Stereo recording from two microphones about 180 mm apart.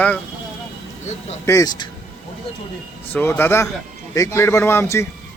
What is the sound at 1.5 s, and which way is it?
Speech, 20° left (ahead or behind).